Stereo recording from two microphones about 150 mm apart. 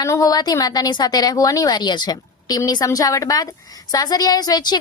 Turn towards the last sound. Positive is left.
turn(degrees=25)  # may be behind; listen again after turning